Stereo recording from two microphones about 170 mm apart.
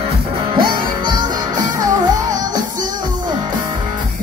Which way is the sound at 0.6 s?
25° right (ahead or behind).